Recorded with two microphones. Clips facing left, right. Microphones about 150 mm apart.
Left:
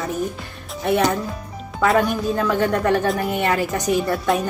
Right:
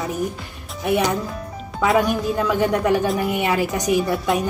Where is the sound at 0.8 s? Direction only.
10° right (ahead or behind).